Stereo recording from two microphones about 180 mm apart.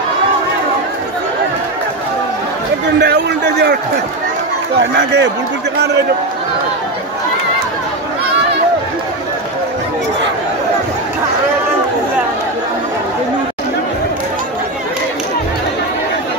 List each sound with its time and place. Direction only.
3.0 s a man's voice: 70° right (ahead or behind)